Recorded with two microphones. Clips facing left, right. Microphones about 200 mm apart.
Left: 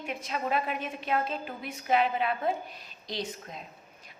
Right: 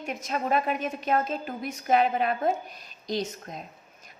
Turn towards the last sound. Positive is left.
turn(degrees=-45)  # may be behind; listen again after turning